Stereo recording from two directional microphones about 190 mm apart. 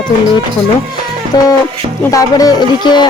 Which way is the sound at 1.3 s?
20° left (ahead or behind).